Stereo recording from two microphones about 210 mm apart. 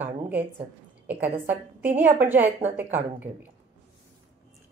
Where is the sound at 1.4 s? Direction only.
10° right (ahead or behind).